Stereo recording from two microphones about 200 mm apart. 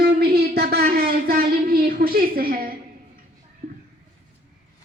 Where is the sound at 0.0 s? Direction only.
50° right (ahead or behind).